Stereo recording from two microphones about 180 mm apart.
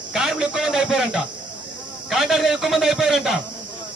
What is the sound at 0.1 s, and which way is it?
A man's voice, 5° right (ahead or behind).